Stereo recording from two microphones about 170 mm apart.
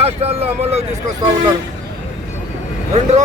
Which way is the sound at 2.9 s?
40° right (ahead or behind).